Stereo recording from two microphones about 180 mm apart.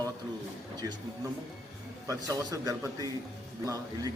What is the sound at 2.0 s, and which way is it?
A man's voice, 20° right (ahead or behind).